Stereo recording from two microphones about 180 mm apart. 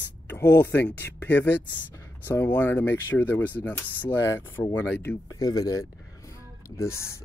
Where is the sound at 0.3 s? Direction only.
10° left (ahead or behind).